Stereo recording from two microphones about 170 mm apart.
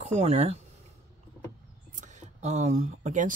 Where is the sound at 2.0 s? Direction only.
45° right (ahead or behind).